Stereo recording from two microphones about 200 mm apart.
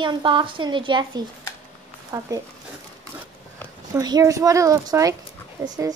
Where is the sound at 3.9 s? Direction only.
20° right (ahead or behind).